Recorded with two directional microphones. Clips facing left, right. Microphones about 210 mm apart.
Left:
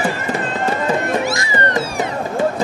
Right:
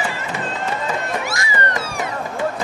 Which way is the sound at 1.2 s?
25° left (ahead or behind).